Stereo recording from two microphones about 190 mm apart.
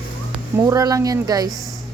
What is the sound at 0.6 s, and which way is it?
Speech, 20° right (ahead or behind).